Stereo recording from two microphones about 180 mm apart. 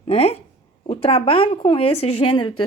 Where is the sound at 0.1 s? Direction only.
35° left (ahead or behind).